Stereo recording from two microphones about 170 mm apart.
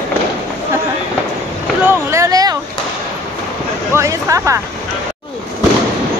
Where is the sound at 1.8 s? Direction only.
20° right (ahead or behind).